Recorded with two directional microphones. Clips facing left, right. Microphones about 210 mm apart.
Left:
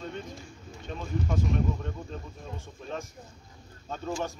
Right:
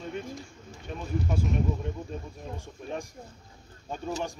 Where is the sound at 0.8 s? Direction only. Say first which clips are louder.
Right 1 dB; 10° right (ahead or behind).